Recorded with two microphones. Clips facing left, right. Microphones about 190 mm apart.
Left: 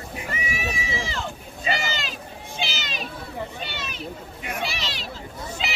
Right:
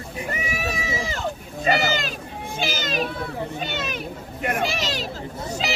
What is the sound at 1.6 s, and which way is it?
Speech, 50° right (ahead or behind).